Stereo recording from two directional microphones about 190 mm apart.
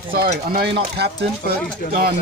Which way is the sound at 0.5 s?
60° right (ahead or behind).